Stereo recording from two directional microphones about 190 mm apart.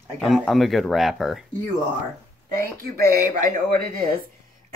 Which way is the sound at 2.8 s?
50° right (ahead or behind).